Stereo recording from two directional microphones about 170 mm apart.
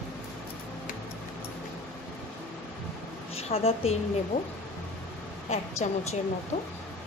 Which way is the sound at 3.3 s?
35° left (ahead or behind).